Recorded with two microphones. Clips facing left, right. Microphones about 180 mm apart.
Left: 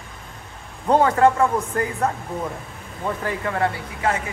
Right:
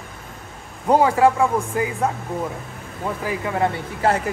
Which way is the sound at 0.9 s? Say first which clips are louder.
Right 1 dB; 10° right (ahead or behind).